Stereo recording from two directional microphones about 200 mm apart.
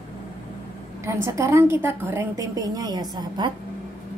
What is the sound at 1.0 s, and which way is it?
A woman's voice, 15° right (ahead or behind).